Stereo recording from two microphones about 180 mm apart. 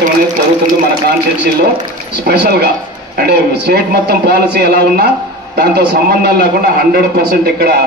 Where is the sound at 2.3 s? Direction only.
55° right (ahead or behind).